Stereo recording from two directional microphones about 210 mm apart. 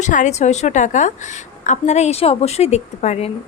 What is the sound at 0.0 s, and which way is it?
A woman's voice, 35° left (ahead or behind).